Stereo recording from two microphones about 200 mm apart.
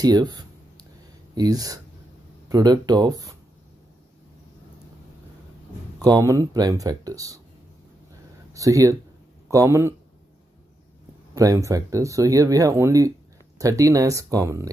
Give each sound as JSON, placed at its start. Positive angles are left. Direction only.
{"t": 0.0, "sound": "a sound", "side_deg": -20}
{"t": 1.3, "sound": "speech", "side_deg": -20}
{"t": 5.9, "sound": "speech", "side_deg": -15}
{"t": 8.5, "sound": "speech", "side_deg": -15}
{"t": 11.3, "sound": "speech", "side_deg": -15}